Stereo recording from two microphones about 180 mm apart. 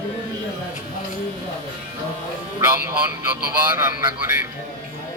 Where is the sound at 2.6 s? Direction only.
10° right (ahead or behind).